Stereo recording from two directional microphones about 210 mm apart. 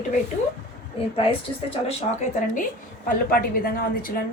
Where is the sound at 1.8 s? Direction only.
35° left (ahead or behind).